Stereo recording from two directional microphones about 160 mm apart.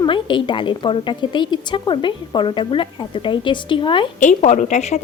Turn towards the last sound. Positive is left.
turn(degrees=45)  # may be behind; listen again after turning